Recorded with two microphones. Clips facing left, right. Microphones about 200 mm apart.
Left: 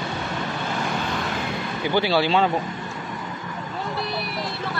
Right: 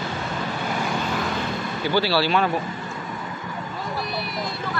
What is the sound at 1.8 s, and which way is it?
Speech, 20° left (ahead or behind).